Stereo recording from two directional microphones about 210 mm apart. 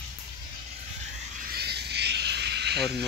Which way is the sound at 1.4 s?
50° right (ahead or behind).